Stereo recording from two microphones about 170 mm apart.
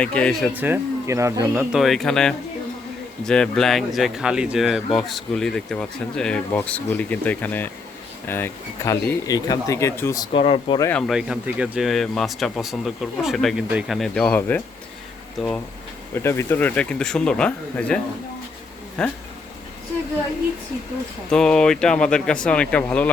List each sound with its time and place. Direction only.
0.0 s speech: 5° left (ahead or behind)
0.5 s speech: 10° right (ahead or behind)
1.7 s speech: centre (ahead or behind); by 10.2 s 15° left (ahead or behind)
10.3 s speech: 30° left (ahead or behind)
10.9 s speech: centre (ahead or behind)
16.2 s speech: 15° left (ahead or behind)
21.2 s speech: 5° left (ahead or behind)